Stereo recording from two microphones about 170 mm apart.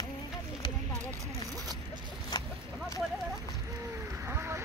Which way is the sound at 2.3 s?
25° left (ahead or behind).